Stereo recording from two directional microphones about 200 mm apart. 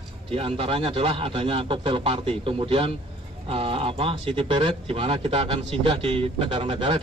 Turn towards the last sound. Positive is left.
turn(degrees=-25)  # may be behind; listen again after turning